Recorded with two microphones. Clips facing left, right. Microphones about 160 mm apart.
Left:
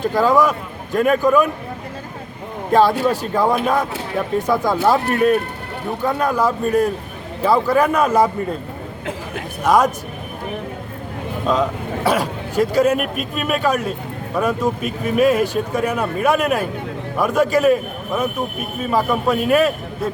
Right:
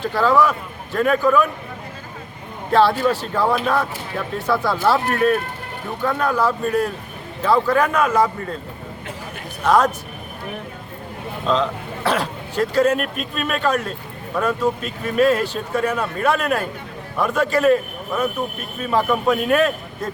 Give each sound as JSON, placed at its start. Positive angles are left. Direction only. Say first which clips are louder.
{"t": 0.1, "sound": "a man's voice", "louder": "left 1 dB", "side_deg": 15}
{"t": 3.1, "sound": "a man's voice", "louder": "left 2 dB", "side_deg": 15}
{"t": 9.6, "sound": "a man's voice", "louder": "left 1 dB", "side_deg": 10}
{"t": 11.4, "sound": "a man's voice", "louder": "left 1 dB", "side_deg": 10}